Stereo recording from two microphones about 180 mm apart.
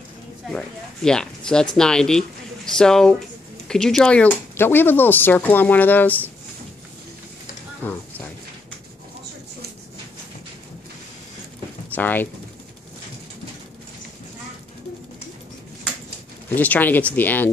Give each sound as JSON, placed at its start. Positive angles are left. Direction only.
{"t": 0.5, "sound": "speech", "side_deg": 5}
{"t": 7.8, "sound": "a sound", "side_deg": 10}
{"t": 11.9, "sound": "speech", "side_deg": 10}
{"t": 16.4, "sound": "speech", "side_deg": 10}